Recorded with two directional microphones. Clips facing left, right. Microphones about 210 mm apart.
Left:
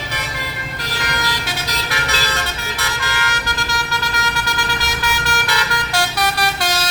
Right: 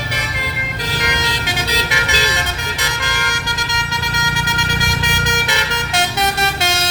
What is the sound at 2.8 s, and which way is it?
Vehicle, 15° right (ahead or behind).